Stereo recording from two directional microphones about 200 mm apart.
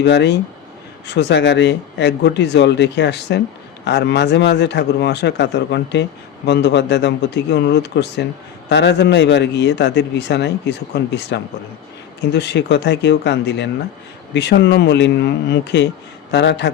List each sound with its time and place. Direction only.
0.0 s a man's voice: 60° left (ahead or behind)